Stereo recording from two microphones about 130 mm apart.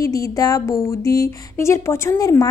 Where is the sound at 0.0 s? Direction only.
25° left (ahead or behind).